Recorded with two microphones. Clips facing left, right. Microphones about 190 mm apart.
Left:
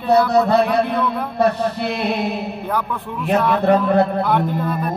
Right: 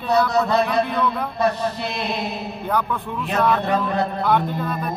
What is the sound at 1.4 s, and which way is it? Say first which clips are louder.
Mantra: left 4 dB; 60° left (ahead or behind).